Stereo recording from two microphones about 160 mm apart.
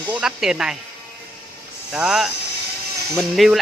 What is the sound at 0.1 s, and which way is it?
Speech, 5° right (ahead or behind).